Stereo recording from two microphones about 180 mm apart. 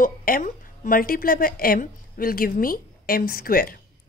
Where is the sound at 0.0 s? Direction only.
50° left (ahead or behind).